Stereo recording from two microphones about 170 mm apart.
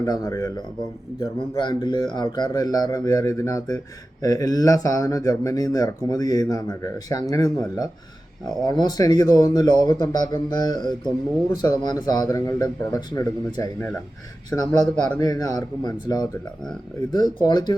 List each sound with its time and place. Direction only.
0.0 s speech: 20° left (ahead or behind)
1.2 s speech: 30° left (ahead or behind)
15.2 s speech: 20° left (ahead or behind)